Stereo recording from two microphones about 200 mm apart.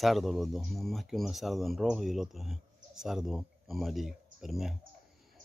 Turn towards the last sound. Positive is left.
turn(degrees=0)  # may be behind; listen again after turning